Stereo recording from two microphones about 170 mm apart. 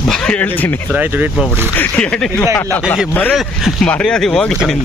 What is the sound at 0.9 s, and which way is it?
Speech, 10° right (ahead or behind).